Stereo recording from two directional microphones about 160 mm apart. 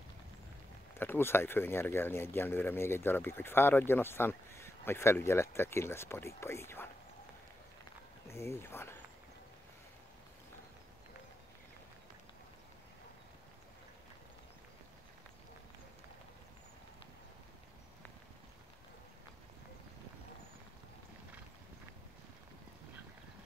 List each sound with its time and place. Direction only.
0.9 s speech: 15° left (ahead or behind)
8.3 s speech: 15° left (ahead or behind)